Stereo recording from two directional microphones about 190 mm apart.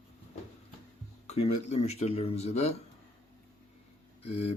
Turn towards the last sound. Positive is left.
turn(degrees=30)  # may be behind; listen again after turning